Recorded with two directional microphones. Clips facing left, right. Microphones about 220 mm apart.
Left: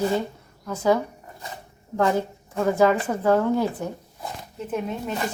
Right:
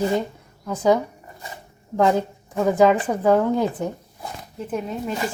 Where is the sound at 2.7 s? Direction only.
15° right (ahead or behind).